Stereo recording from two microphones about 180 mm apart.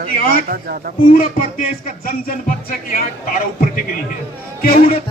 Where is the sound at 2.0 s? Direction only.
50° left (ahead or behind).